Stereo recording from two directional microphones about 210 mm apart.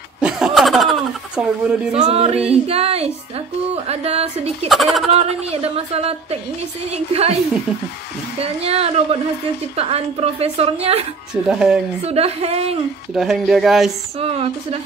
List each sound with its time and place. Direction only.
0.2 s snicker: centre (ahead or behind)
2.0 s a woman's voice: 30° right (ahead or behind)
4.6 s speech: centre (ahead or behind)
5.1 s a woman's voice: 30° right (ahead or behind)
8.4 s a woman's voice: 30° right (ahead or behind)
11.4 s speech: 5° right (ahead or behind)
12.0 s a woman's voice: 30° right (ahead or behind)
13.1 s speech: centre (ahead or behind)
14.2 s a woman's voice: 30° right (ahead or behind)